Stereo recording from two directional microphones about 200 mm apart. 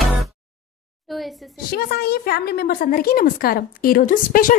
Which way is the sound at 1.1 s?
Centre (ahead or behind).